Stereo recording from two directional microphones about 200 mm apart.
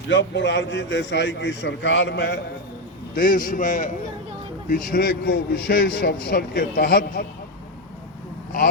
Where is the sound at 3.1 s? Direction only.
45° left (ahead or behind).